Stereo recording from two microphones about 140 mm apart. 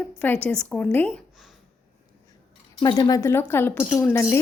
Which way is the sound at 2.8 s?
30° left (ahead or behind).